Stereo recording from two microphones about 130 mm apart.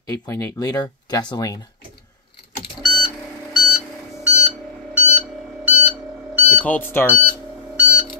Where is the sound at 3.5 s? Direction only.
Centre (ahead or behind).